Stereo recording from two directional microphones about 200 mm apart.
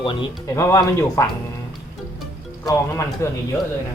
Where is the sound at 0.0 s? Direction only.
25° left (ahead or behind).